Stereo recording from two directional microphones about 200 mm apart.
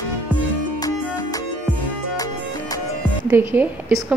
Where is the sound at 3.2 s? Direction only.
10° right (ahead or behind).